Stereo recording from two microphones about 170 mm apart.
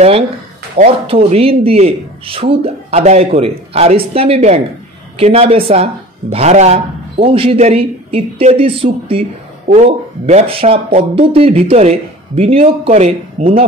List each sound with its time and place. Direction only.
0.7 s speech: 40° right (ahead or behind)